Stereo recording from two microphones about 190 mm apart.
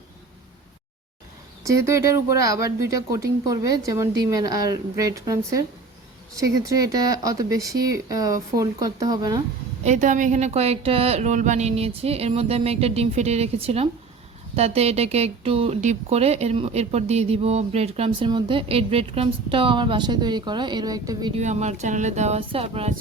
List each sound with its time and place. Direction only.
1.6 s speech: 15° right (ahead or behind)
9.8 s speech: 40° right (ahead or behind); by 21.3 s 20° right (ahead or behind)
21.3 s speech: 35° right (ahead or behind)